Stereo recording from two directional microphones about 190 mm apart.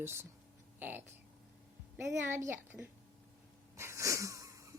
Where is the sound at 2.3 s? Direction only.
10° right (ahead or behind).